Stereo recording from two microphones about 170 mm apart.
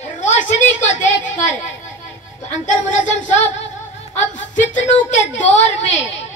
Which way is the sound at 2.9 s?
45° left (ahead or behind).